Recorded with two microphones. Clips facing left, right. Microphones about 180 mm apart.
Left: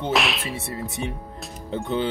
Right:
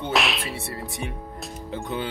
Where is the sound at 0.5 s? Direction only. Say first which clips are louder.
Left 2 dB; 20° left (ahead or behind).